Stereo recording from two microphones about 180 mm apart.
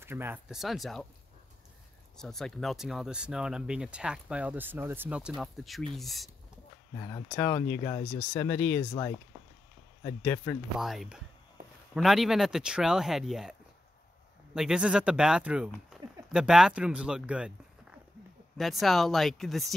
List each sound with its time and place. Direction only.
0.0 s speech: 15° right (ahead or behind)
2.1 s speech: centre (ahead or behind)
7.0 s speech: 20° left (ahead or behind)
10.0 s speech: 10° left (ahead or behind)
10.8 s speech: centre (ahead or behind)
18.6 s speech: centre (ahead or behind)